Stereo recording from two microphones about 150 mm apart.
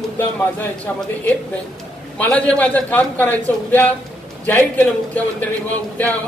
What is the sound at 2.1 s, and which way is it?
A man's voice, 10° left (ahead or behind).